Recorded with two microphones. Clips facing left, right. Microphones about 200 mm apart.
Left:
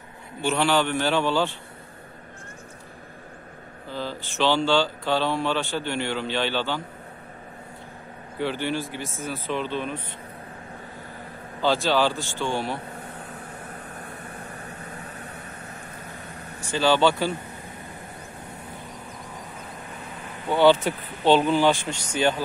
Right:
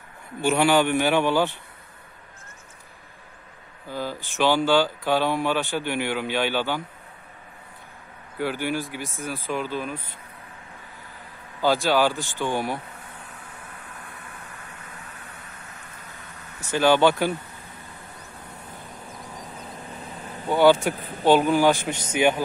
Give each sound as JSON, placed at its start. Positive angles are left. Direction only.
{"t": 0.4, "sound": "speech", "side_deg": -15}
{"t": 3.9, "sound": "speech", "side_deg": -10}
{"t": 8.4, "sound": "speech", "side_deg": -10}
{"t": 11.6, "sound": "speech", "side_deg": -15}
{"t": 13.6, "sound": "vehicle", "side_deg": 40}
{"t": 16.7, "sound": "speech", "side_deg": -15}
{"t": 20.4, "sound": "speech", "side_deg": -15}